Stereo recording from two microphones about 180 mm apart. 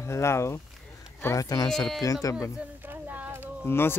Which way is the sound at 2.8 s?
10° right (ahead or behind).